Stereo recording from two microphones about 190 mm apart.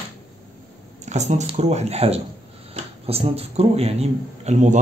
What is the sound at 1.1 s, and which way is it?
Speech, 35° right (ahead or behind).